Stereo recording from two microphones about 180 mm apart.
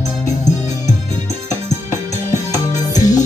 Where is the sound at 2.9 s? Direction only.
20° left (ahead or behind).